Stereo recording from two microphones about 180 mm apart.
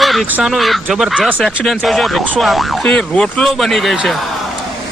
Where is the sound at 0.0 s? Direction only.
Centre (ahead or behind).